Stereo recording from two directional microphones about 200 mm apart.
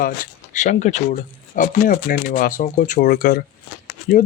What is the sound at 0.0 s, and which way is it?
Speech, 40° left (ahead or behind).